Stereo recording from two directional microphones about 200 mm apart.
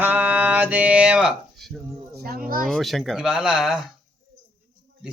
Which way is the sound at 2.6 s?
Centre (ahead or behind).